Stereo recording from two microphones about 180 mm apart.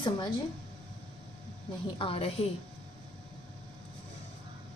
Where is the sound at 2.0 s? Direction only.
30° left (ahead or behind).